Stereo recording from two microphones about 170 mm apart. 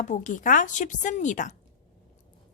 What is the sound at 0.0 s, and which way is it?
A woman's voice, 45° left (ahead or behind).